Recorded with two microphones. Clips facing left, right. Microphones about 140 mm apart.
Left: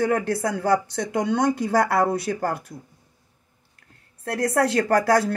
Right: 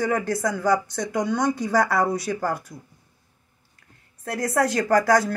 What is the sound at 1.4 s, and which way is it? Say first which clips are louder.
A man's voice: left 1 dB; 55° left (ahead or behind).